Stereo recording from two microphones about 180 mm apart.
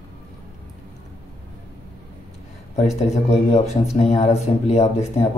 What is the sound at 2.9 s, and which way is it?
Speech, 35° left (ahead or behind).